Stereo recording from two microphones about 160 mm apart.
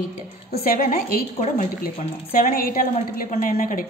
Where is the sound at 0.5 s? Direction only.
60° left (ahead or behind).